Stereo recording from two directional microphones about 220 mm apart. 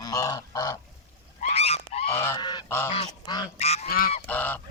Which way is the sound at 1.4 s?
30° left (ahead or behind).